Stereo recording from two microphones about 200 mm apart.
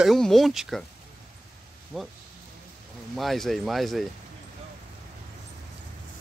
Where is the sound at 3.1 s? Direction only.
Centre (ahead or behind).